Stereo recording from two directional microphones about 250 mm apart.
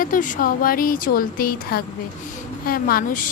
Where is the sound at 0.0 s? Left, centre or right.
Left.